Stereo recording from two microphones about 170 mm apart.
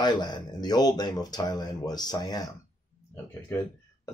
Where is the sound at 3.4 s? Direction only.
15° left (ahead or behind).